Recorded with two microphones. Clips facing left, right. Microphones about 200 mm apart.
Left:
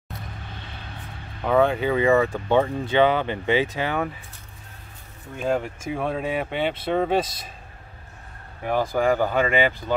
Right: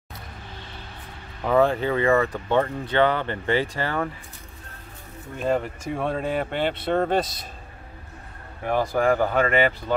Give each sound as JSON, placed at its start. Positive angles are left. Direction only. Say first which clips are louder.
{"t": 1.4, "sound": "speech", "louder": "even", "side_deg": 0}
{"t": 5.4, "sound": "speech", "louder": "even", "side_deg": 0}
{"t": 8.6, "sound": "speech", "louder": "even", "side_deg": 0}